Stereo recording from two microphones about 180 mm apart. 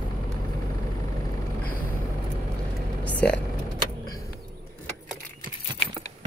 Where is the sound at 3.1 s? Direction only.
5° left (ahead or behind).